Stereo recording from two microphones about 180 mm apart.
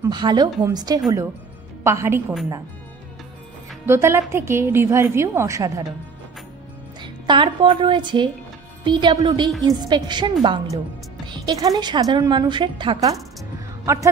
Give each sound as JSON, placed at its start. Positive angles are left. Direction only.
{"t": 0.0, "sound": "a woman's voice", "side_deg": -25}
{"t": 3.8, "sound": "a woman's voice", "side_deg": -15}
{"t": 7.0, "sound": "a woman's voice", "side_deg": -25}